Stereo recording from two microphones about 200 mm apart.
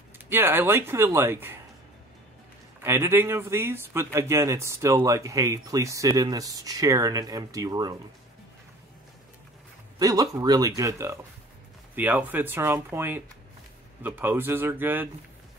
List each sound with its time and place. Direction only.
0.3 s speech: 10° right (ahead or behind)
2.8 s speech: 10° right (ahead or behind)
9.9 s speech: 20° right (ahead or behind)